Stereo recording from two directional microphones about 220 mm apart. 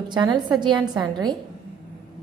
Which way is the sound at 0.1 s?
20° right (ahead or behind).